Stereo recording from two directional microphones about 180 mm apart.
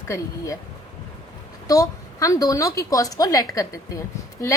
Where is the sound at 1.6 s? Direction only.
20° left (ahead or behind).